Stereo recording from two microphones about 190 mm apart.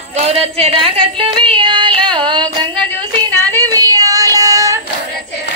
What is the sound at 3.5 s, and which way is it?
Child singing, 20° right (ahead or behind).